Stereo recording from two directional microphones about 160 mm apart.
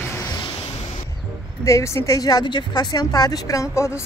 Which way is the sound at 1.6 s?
20° left (ahead or behind).